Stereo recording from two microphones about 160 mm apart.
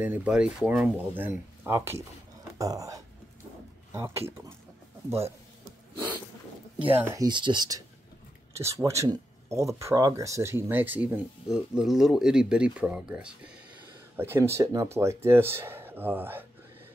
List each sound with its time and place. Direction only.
0.0 s speech: 10° right (ahead or behind)
7.0 s speech: 15° right (ahead or behind)
7.2 s speech: 30° right (ahead or behind); by 16.4 s 10° right (ahead or behind)